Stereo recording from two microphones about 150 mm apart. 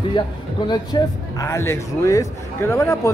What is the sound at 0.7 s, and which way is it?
Speech, 25° left (ahead or behind).